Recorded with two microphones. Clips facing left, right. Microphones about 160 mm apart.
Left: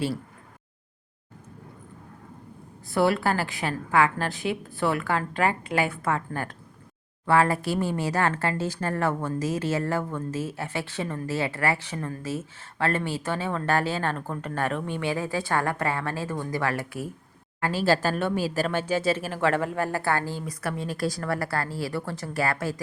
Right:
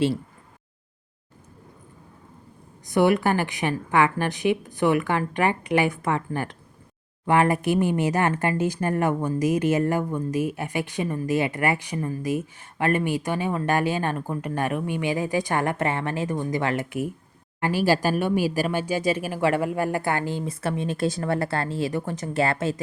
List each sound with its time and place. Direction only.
2.8 s speech: 15° right (ahead or behind)